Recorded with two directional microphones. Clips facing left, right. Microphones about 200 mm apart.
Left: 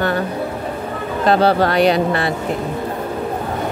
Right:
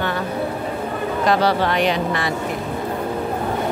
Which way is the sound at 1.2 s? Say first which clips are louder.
Left 4 dB; 35° left (ahead or behind).